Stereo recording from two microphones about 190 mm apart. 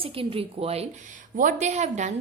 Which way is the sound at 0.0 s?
30° right (ahead or behind).